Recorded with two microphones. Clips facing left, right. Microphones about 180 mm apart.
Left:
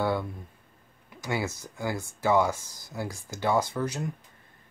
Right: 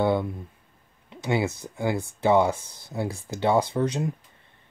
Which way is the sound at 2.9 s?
30° right (ahead or behind).